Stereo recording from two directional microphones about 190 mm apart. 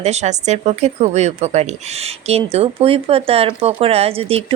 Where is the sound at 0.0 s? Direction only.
35° right (ahead or behind).